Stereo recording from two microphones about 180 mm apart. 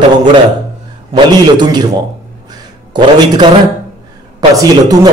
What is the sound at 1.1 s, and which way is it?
Speech, 25° right (ahead or behind).